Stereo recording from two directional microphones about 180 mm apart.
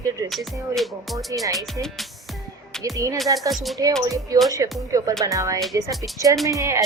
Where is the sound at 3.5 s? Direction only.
Centre (ahead or behind).